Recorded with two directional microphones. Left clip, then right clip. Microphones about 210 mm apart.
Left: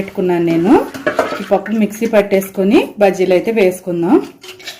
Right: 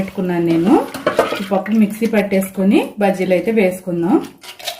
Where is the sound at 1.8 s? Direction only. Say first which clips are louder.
Left 4 dB; 15° left (ahead or behind).